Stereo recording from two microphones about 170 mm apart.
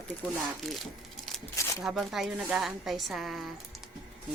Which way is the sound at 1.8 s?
Centre (ahead or behind).